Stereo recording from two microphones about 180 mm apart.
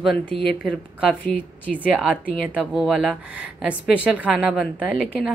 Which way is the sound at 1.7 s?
5° right (ahead or behind).